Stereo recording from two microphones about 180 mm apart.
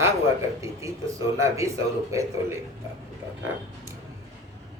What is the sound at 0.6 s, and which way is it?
Speech, 15° right (ahead or behind).